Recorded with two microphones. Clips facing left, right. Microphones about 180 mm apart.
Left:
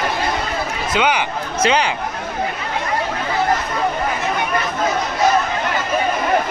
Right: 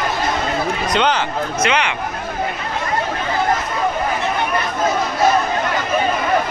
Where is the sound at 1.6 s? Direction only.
35° left (ahead or behind).